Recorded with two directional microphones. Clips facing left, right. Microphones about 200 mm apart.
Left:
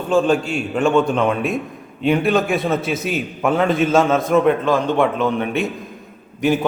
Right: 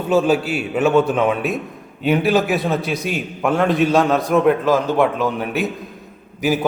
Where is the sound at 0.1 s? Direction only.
5° right (ahead or behind).